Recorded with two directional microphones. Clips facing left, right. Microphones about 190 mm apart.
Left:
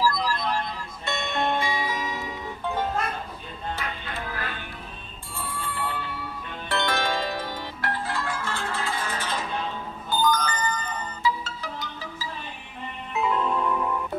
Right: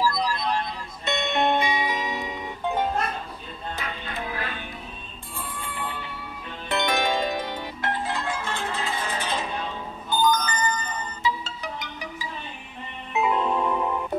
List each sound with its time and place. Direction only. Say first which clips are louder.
0.0 s music: even; 20° right (ahead or behind)
5.6 s bicycle bell: left 3 dB; 15° right (ahead or behind)
6.7 s music: right 2 dB; 15° right (ahead or behind)